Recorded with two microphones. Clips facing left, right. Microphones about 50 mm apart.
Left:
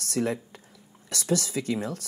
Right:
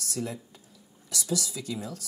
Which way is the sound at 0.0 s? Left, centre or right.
Left.